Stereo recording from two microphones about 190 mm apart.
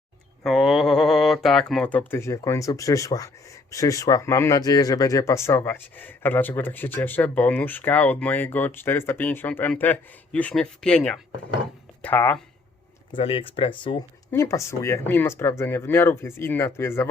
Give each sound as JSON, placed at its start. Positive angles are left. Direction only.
{"t": 0.4, "sound": "speech", "side_deg": 0}
{"t": 13.1, "sound": "speech", "side_deg": 30}
{"t": 14.3, "sound": "speech", "side_deg": 15}